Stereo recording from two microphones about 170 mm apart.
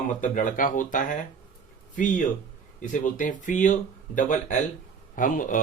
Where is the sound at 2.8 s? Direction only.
50° left (ahead or behind).